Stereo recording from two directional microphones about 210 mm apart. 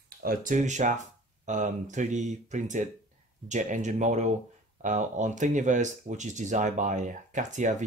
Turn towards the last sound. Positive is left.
turn(degrees=-35)  # may be behind; listen again after turning